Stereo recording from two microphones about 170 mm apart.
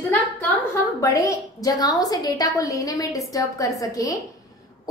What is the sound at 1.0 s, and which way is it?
A woman's voice, 20° left (ahead or behind).